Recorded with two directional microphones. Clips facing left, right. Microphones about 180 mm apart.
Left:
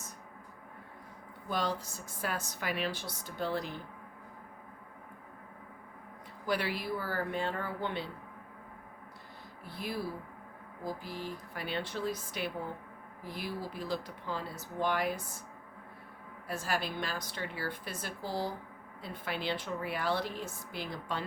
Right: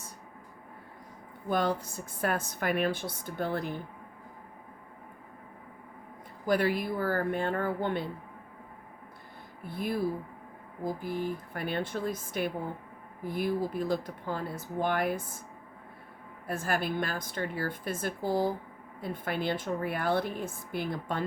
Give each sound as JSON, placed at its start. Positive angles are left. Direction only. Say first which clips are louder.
{"t": 1.5, "sound": "a woman's voice", "louder": "right 5 dB", "side_deg": -55}
{"t": 6.4, "sound": "a woman's voice", "louder": "right 6 dB", "side_deg": -50}
{"t": 9.6, "sound": "a woman's voice", "louder": "right 7 dB", "side_deg": -50}
{"t": 16.5, "sound": "a woman's voice", "louder": "right 4 dB", "side_deg": -55}